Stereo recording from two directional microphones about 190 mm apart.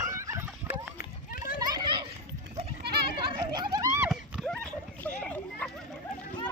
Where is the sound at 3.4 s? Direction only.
20° right (ahead or behind).